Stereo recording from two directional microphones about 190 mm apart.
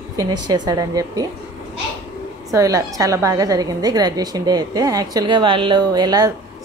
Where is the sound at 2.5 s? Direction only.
15° right (ahead or behind).